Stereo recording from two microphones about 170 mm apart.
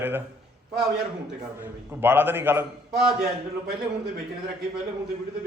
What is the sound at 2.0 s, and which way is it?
Speech, 10° right (ahead or behind).